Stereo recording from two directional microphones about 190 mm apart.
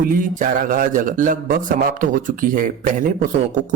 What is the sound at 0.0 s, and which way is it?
Speech, 45° right (ahead or behind).